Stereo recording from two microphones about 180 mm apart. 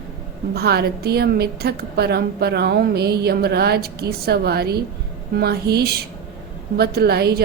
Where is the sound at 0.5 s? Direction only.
65° right (ahead or behind).